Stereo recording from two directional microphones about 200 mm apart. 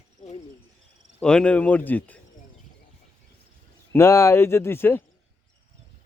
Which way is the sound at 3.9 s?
15° left (ahead or behind).